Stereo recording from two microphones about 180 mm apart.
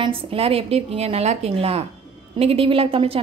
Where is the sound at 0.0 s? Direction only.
30° right (ahead or behind).